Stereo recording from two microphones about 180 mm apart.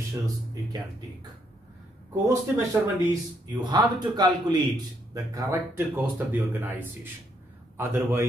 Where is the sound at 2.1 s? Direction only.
15° right (ahead or behind).